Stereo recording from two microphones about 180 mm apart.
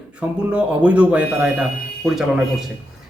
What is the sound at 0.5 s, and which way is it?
A man's voice, 5° right (ahead or behind).